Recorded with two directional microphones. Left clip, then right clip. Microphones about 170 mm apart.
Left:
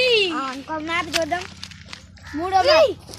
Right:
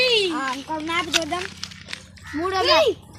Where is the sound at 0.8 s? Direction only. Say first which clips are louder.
Even; 20° left (ahead or behind).